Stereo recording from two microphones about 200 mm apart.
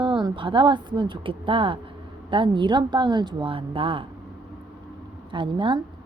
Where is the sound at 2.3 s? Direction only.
25° right (ahead or behind).